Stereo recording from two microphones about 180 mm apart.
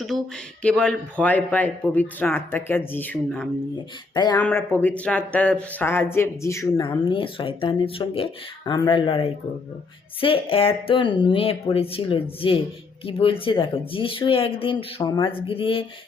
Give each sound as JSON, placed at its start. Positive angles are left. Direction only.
{"t": 0.6, "sound": "speech", "side_deg": 5}
{"t": 4.1, "sound": "speech", "side_deg": 20}
{"t": 4.4, "sound": "speech", "side_deg": 10}
{"t": 7.1, "sound": "speech", "side_deg": 30}